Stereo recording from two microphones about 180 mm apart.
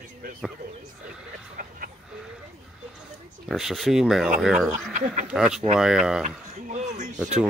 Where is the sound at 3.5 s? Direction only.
Centre (ahead or behind).